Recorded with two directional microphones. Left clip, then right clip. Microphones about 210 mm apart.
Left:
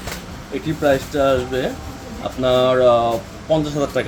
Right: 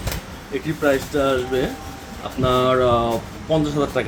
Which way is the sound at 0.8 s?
5° left (ahead or behind).